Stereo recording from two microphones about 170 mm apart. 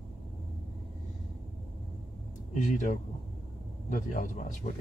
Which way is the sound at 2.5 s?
45° left (ahead or behind).